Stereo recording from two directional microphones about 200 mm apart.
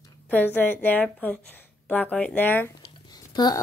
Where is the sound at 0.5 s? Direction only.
10° left (ahead or behind).